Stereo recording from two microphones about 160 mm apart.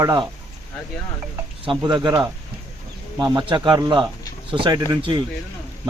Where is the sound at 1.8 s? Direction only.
25° right (ahead or behind).